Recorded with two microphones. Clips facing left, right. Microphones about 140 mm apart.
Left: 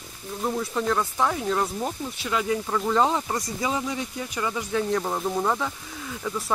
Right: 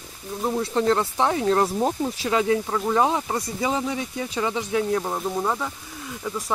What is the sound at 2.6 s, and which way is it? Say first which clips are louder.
Speech: right 1 dB; 10° right (ahead or behind).